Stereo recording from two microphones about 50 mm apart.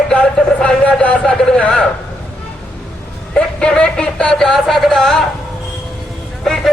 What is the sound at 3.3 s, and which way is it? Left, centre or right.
Speech, centre.